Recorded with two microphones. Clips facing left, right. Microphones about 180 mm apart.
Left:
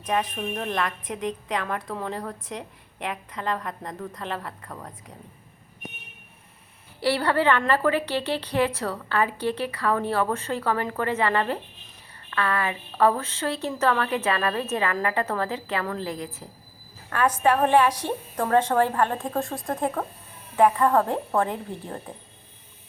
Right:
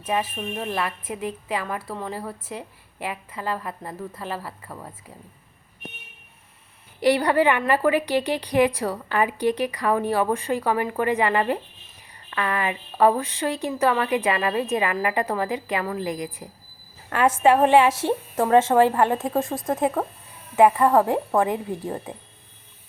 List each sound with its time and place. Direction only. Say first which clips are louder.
0.0 s a woman's voice: even; 5° right (ahead or behind)
7.0 s a woman's voice: right 4 dB; 15° right (ahead or behind)